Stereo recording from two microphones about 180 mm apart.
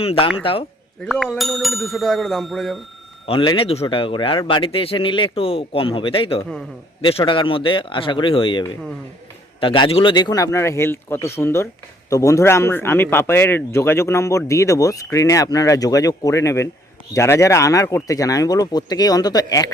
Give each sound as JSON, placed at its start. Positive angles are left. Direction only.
{"t": 0.0, "sound": "speech", "side_deg": 30}
{"t": 1.0, "sound": "speech", "side_deg": 0}
{"t": 3.2, "sound": "a man's voice", "side_deg": 30}